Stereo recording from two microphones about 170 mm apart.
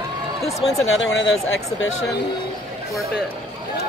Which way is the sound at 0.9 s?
90° left.